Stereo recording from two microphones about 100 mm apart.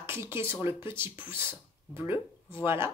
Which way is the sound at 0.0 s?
25° right (ahead or behind).